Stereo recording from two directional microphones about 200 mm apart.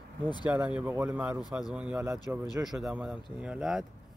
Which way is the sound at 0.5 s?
5° right (ahead or behind).